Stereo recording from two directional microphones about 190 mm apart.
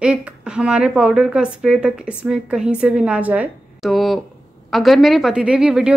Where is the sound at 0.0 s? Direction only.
5° right (ahead or behind).